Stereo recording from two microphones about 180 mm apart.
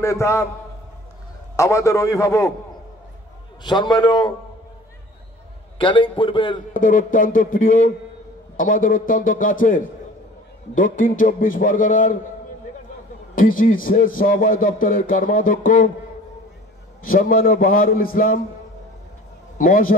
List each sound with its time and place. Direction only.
0.0 s a man's voice: 15° left (ahead or behind)
1.6 s a man's voice: 15° left (ahead or behind)
3.6 s a man's voice: 25° left (ahead or behind)
5.8 s a man's voice: 25° left (ahead or behind)
6.8 s a man's voice: 50° left (ahead or behind)
13.3 s a man's voice: 50° left (ahead or behind)
17.0 s a man's voice: 50° left (ahead or behind)
19.6 s a man's voice: 50° left (ahead or behind)